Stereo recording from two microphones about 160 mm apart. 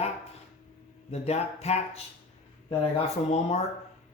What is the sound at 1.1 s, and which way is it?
Speech, 40° left (ahead or behind).